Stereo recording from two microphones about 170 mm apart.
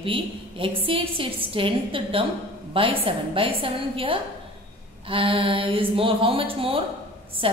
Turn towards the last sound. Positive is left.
turn(degrees=-30)  # may be behind; listen again after turning